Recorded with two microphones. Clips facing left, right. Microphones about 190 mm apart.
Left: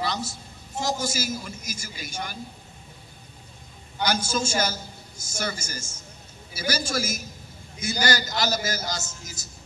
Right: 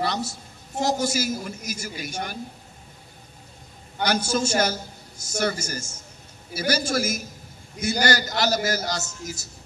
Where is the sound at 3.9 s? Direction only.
65° right (ahead or behind).